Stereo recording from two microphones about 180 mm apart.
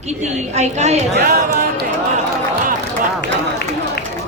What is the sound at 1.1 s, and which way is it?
Speech, 65° right (ahead or behind).